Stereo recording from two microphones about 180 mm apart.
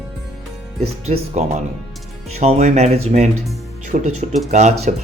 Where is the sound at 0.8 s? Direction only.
35° right (ahead or behind).